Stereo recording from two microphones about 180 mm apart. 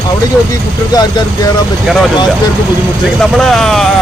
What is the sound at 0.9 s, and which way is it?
Speech, 20° left (ahead or behind).